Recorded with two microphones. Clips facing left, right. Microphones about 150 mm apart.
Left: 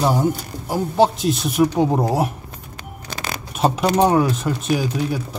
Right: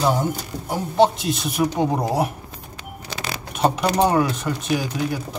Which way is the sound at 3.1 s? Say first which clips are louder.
Left 1 dB; 50° left (ahead or behind).